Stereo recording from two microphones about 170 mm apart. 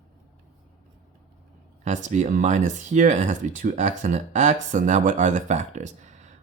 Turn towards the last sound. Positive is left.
turn(degrees=-45)  # may be behind; listen again after turning